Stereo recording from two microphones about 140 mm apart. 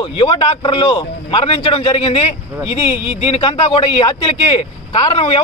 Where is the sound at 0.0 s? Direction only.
35° left (ahead or behind).